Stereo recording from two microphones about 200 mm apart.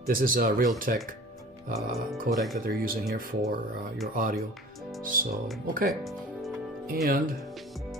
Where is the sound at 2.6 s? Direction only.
45° right (ahead or behind).